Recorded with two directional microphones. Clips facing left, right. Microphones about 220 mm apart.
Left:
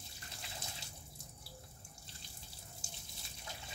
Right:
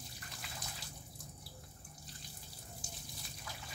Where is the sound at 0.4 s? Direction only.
25° left (ahead or behind).